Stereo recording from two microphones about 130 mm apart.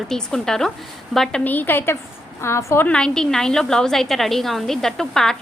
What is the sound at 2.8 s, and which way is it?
A woman's voice, 5° left (ahead or behind).